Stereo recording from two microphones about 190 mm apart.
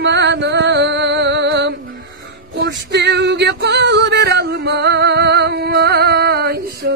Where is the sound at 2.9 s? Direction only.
65° right (ahead or behind).